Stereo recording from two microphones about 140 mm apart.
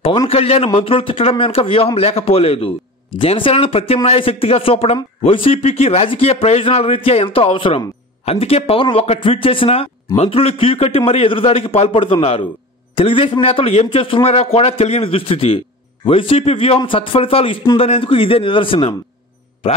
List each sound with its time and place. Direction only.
0.3 s speech: 45° left (ahead or behind)